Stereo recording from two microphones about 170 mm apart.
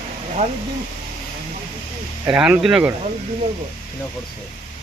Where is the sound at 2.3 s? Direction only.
5° right (ahead or behind).